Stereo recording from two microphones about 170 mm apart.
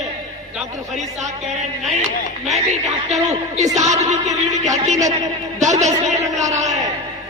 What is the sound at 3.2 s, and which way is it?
A man's voice, 40° right (ahead or behind).